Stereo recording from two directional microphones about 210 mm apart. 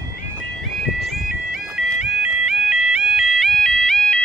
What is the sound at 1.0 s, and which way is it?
Music, centre (ahead or behind).